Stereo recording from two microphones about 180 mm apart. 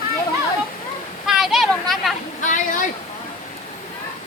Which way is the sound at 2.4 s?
45° left (ahead or behind).